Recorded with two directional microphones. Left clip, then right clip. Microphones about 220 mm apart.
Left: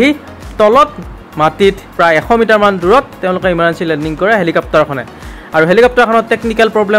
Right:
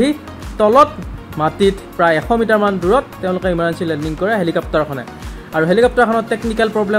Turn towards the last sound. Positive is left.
turn(degrees=15)  # may be behind; listen again after turning